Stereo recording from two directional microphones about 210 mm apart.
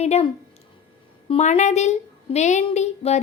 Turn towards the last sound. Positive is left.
turn(degrees=30)  # may be behind; listen again after turning